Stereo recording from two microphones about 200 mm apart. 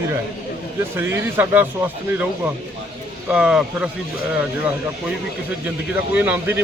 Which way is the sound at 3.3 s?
5° right (ahead or behind).